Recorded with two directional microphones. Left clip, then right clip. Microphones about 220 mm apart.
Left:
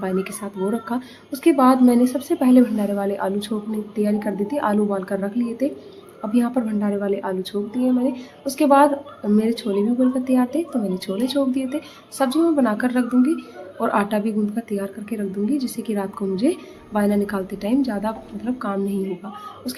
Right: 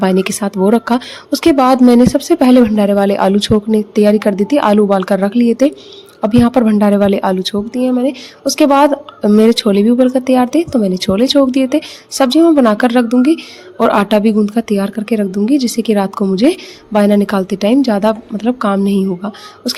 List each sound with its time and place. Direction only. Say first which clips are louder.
0.0 s a woman's voice: right 11 dB; 50° right (ahead or behind)